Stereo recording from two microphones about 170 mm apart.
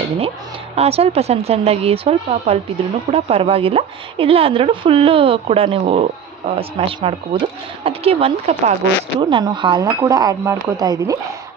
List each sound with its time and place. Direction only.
0.7 s speech: 35° right (ahead or behind); by 11.1 s 20° right (ahead or behind)